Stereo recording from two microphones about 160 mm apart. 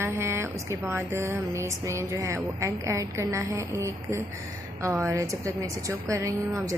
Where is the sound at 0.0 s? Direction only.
15° right (ahead or behind).